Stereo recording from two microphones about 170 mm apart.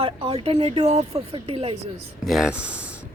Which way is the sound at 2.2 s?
Centre (ahead or behind).